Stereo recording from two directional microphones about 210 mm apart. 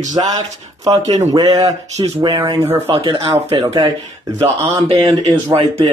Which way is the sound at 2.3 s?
15° right (ahead or behind).